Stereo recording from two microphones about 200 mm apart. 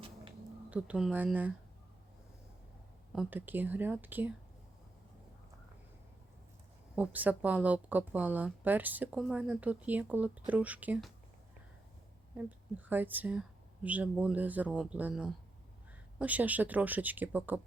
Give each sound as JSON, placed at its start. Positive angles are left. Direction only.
{"t": 0.7, "sound": "a woman's voice", "side_deg": -5}
{"t": 3.2, "sound": "a woman's voice", "side_deg": -10}
{"t": 6.9, "sound": "a woman's voice", "side_deg": -10}
{"t": 12.4, "sound": "a woman's voice", "side_deg": -10}